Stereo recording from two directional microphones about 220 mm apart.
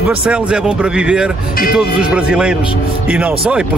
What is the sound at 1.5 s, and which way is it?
Speech, 40° left (ahead or behind).